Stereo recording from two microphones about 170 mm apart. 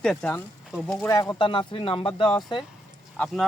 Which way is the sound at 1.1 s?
20° left (ahead or behind).